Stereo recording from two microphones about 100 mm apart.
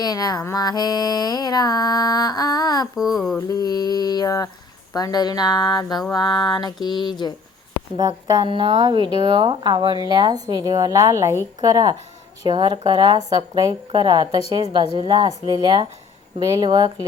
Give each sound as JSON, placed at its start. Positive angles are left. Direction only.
{"t": 0.0, "sound": "mantra", "side_deg": 40}
{"t": 2.9, "sound": "speech", "side_deg": 0}
{"t": 3.5, "sound": "mantra", "side_deg": 40}
{"t": 7.9, "sound": "speech", "side_deg": -40}
{"t": 8.4, "sound": "speech", "side_deg": -65}
{"t": 8.8, "sound": "speech", "side_deg": -50}
{"t": 12.5, "sound": "speech", "side_deg": -55}